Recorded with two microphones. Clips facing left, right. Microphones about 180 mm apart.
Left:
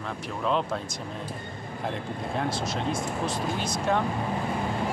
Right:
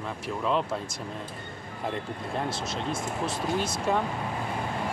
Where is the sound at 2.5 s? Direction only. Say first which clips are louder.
Left 2 dB; centre (ahead or behind).